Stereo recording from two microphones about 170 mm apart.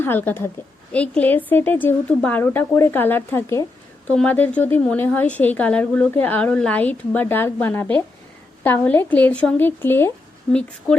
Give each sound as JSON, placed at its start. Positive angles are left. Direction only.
{"t": 0.0, "sound": "a woman's voice", "side_deg": 10}